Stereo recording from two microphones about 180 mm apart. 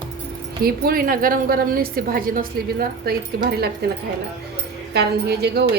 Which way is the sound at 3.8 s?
60° right (ahead or behind).